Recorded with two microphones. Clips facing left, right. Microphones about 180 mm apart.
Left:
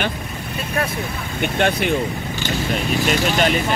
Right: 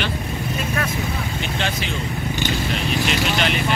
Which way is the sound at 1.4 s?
55° left (ahead or behind).